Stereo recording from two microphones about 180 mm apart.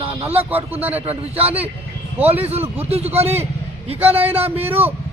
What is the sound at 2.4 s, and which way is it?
A man's voice, 35° right (ahead or behind).